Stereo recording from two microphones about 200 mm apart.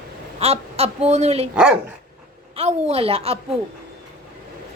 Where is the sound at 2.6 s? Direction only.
30° right (ahead or behind).